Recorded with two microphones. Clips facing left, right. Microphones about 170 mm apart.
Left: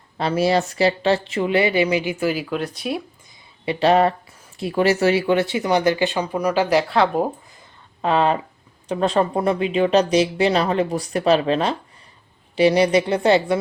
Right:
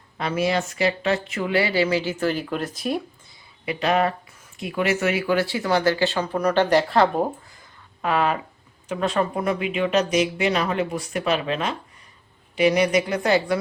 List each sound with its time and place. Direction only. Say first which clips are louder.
0.2 s speech: left 4 dB; 35° left (ahead or behind); by 3.0 s centre (ahead or behind)
3.7 s speech: left 5 dB; 30° left (ahead or behind); by 7.3 s centre (ahead or behind)
8.0 s speech: left 4 dB; 25° left (ahead or behind)